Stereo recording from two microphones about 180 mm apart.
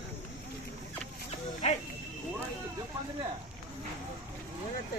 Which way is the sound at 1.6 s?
35° left (ahead or behind).